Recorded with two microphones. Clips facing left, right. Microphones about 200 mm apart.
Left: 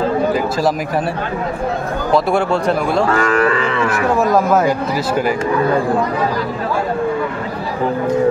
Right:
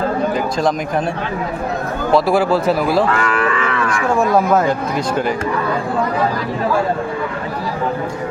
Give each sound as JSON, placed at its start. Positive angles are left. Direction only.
{"t": 0.3, "sound": "speech", "side_deg": 5}
{"t": 2.1, "sound": "speech", "side_deg": 0}
{"t": 3.1, "sound": "livestock", "side_deg": 40}
{"t": 3.8, "sound": "speech", "side_deg": 5}